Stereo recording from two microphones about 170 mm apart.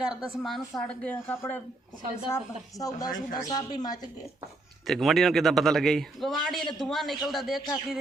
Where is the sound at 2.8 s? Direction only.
20° left (ahead or behind).